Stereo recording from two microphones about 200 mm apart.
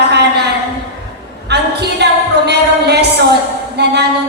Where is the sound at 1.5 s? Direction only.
55° right (ahead or behind).